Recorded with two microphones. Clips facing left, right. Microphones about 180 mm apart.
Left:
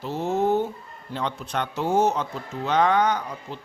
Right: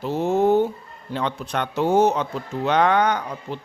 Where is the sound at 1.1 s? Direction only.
65° right (ahead or behind).